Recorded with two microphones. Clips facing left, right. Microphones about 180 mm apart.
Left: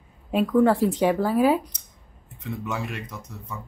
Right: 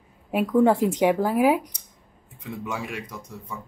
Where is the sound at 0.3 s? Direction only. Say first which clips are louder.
Even; 15° right (ahead or behind).